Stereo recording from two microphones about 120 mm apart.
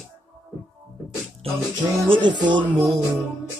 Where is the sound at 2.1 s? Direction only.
40° right (ahead or behind).